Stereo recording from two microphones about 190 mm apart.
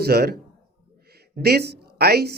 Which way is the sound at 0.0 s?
55° right (ahead or behind).